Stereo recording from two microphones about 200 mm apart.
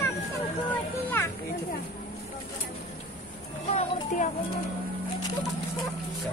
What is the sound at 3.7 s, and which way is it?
Music, 40° left (ahead or behind).